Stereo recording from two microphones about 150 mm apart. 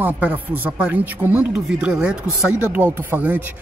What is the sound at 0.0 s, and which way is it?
Speech, 10° right (ahead or behind).